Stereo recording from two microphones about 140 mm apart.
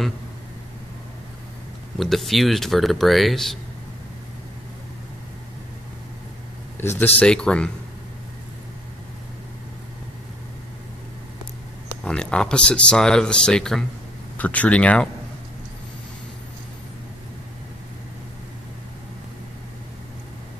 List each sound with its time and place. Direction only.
2.0 s speech: centre (ahead or behind)
6.8 s speech: 20° left (ahead or behind)
7.2 s speech: 5° left (ahead or behind)
11.9 s speech: 5° left (ahead or behind)